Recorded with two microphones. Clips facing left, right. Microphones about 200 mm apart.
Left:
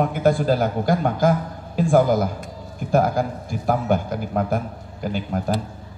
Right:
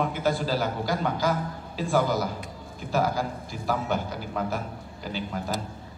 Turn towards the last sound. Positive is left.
turn(degrees=50)  # may be behind; listen again after turning